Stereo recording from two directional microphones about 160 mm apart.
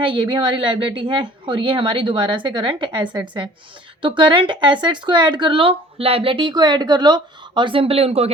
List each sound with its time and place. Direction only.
0.0 s a woman's voice: 30° right (ahead or behind)